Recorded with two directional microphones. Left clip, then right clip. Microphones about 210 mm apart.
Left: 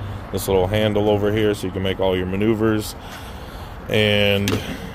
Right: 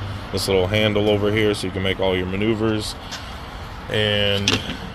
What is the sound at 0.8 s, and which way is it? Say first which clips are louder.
Speech: even; 10° left (ahead or behind).